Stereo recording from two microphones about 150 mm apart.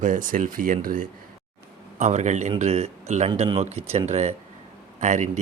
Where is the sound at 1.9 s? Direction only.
50° right (ahead or behind).